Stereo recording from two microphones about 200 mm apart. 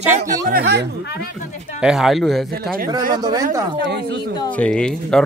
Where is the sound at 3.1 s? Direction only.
20° right (ahead or behind).